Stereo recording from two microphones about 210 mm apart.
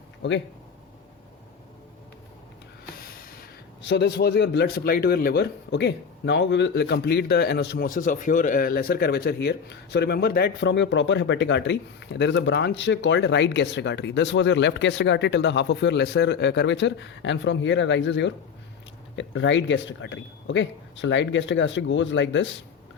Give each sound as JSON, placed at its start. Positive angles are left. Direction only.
{"t": 0.2, "sound": "speech", "side_deg": 60}
{"t": 3.0, "sound": "a sound", "side_deg": 45}
{"t": 3.8, "sound": "speech", "side_deg": 55}